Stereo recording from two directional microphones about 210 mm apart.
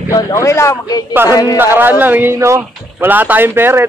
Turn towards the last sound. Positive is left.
turn(degrees=-10)  # may be behind; listen again after turning